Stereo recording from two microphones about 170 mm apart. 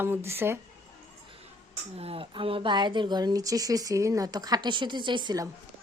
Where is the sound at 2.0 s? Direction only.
35° right (ahead or behind).